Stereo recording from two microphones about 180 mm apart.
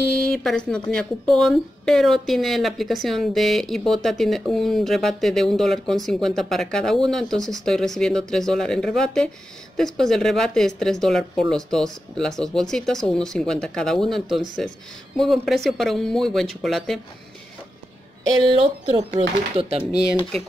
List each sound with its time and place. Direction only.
0.1 s speech: 5° left (ahead or behind)
18.4 s speech: 30° right (ahead or behind)